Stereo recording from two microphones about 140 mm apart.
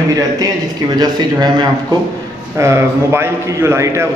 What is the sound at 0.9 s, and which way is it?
Speech, 30° right (ahead or behind).